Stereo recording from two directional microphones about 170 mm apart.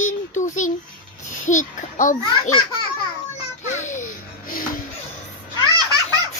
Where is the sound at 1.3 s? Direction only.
45° left (ahead or behind).